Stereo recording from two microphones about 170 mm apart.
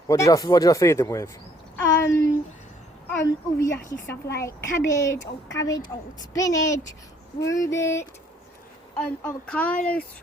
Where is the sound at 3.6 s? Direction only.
15° left (ahead or behind).